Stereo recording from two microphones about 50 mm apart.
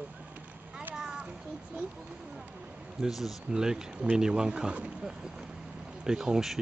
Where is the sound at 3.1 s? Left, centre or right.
Centre.